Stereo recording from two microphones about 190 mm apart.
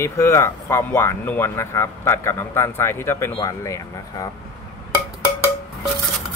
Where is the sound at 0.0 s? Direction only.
15° left (ahead or behind).